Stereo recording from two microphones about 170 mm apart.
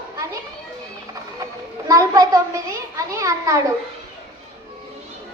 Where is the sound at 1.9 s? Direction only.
20° right (ahead or behind).